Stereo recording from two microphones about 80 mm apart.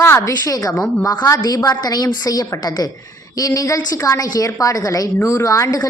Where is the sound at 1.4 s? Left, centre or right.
Left.